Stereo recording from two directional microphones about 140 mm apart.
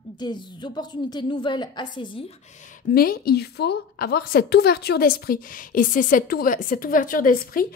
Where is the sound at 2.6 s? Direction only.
75° left (ahead or behind).